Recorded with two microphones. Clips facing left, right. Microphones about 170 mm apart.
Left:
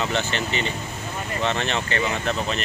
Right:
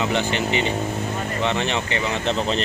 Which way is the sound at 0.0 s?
15° right (ahead or behind).